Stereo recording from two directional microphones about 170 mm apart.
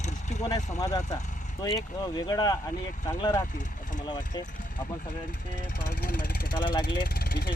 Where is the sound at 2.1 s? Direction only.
25° left (ahead or behind).